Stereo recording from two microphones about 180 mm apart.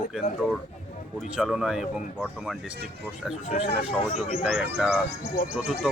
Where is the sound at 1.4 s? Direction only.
Centre (ahead or behind).